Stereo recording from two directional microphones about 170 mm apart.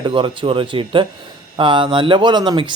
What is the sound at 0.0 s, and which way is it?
A man's voice, 30° right (ahead or behind).